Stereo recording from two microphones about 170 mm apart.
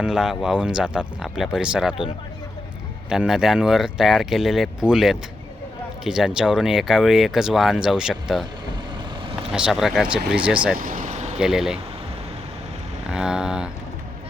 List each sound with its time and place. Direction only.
0.0 s speech: 5° right (ahead or behind)
3.1 s speech: 5° right (ahead or behind)
9.5 s speech: 5° right (ahead or behind)
10.8 s vehicle: 50° right (ahead or behind)
11.3 s speech: 5° right (ahead or behind)
13.1 s speech: 5° right (ahead or behind)